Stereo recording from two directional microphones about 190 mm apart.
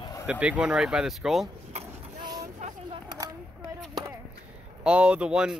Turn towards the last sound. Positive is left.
turn(degrees=-5)  # may be behind; listen again after turning